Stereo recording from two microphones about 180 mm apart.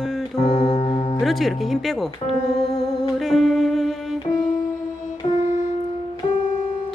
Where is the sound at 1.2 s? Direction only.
Centre (ahead or behind).